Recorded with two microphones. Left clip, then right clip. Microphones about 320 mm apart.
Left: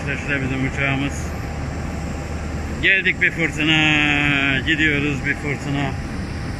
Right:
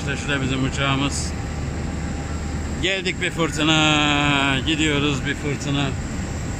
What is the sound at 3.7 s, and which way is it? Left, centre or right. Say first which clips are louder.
Speech: left 2 dB; right.